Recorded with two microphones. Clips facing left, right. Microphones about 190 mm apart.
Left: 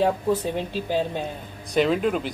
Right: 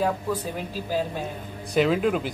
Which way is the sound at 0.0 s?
25° left (ahead or behind).